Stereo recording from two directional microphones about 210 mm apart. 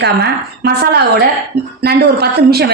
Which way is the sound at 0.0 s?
50° right (ahead or behind).